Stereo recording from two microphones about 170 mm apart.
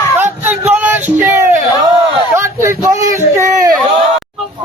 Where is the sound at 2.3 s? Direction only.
15° right (ahead or behind).